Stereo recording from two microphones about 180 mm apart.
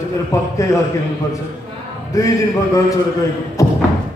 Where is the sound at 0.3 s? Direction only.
15° left (ahead or behind).